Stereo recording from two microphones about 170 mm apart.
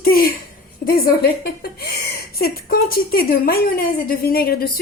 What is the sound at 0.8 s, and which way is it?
A woman's voice, 65° left (ahead or behind).